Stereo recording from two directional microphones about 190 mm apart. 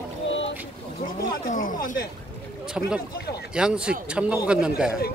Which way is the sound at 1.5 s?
45° left (ahead or behind).